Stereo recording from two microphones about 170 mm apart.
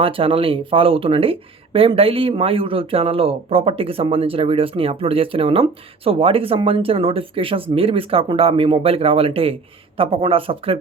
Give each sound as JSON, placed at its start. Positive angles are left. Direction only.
{"t": 0.0, "sound": "speech", "side_deg": -30}